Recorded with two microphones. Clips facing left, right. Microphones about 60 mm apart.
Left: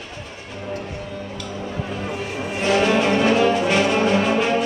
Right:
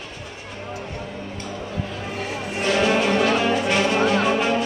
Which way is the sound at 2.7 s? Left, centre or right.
Centre.